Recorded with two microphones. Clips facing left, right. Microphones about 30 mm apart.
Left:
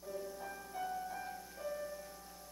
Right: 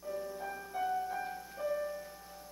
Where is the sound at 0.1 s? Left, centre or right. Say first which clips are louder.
Right 5 dB; centre.